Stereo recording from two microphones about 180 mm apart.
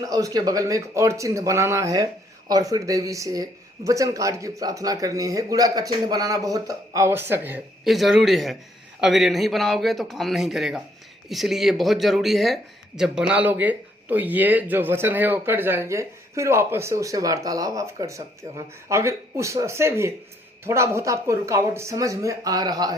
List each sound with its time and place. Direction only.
0.0 s speech: 20° right (ahead or behind)